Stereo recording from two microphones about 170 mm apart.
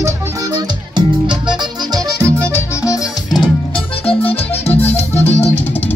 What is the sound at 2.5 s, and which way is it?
Music, 15° left (ahead or behind).